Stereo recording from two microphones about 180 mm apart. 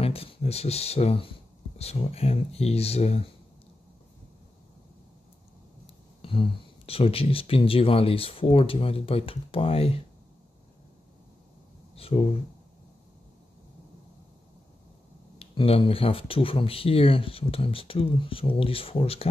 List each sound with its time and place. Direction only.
0.0 s speech: 30° left (ahead or behind)
6.2 s speech: 30° left (ahead or behind)
11.9 s speech: 35° left (ahead or behind)
15.3 s speech: 30° left (ahead or behind)